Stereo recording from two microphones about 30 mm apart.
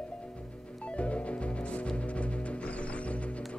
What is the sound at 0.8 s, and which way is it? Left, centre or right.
Music, left.